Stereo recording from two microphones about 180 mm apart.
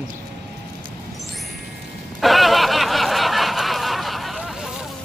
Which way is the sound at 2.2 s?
Centre (ahead or behind).